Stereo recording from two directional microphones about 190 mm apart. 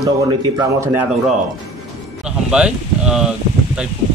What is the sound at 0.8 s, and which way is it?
Speech, 10° right (ahead or behind).